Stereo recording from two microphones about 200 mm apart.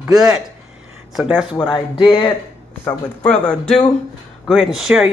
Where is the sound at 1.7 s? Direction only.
25° left (ahead or behind).